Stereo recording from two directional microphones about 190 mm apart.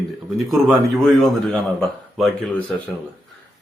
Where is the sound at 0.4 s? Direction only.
Centre (ahead or behind).